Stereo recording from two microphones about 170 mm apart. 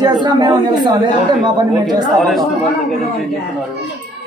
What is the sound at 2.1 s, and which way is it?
Speech, centre (ahead or behind).